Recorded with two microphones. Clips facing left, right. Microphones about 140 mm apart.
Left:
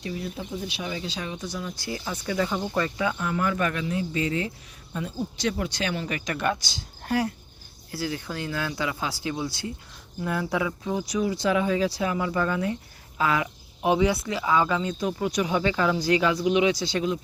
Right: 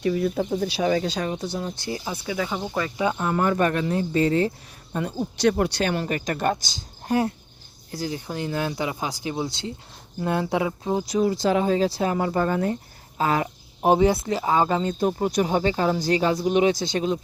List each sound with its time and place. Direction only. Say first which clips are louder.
0.0 s speech: right 10 dB; 55° right (ahead or behind)
0.8 s speech: right 14 dB; 80° right
1.0 s speech: right 6 dB; 45° right (ahead or behind)
1.7 s speech: right 2 dB; 25° right (ahead or behind)
2.1 s speech: left 4 dB; 10° right (ahead or behind)
3.0 s speech: right 4 dB; 35° right (ahead or behind)
5.4 s speech: right 8 dB; 60° right (ahead or behind); by 6.7 s 40° right (ahead or behind)
7.0 s speech: right 3 dB; 25° right (ahead or behind); by 17.0 s 45° right (ahead or behind)